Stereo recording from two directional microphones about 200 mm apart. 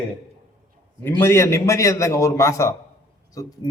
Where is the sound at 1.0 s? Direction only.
10° left (ahead or behind).